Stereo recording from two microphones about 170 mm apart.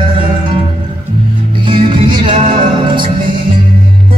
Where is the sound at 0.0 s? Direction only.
30° right (ahead or behind).